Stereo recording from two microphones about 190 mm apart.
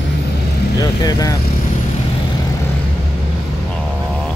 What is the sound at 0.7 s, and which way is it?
Speech, 20° left (ahead or behind).